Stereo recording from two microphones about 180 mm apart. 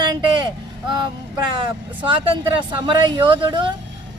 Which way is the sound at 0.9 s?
25° right (ahead or behind).